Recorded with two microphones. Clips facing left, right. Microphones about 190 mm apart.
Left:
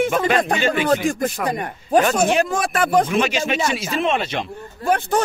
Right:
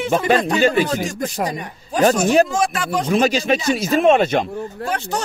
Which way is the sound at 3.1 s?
35° right (ahead or behind).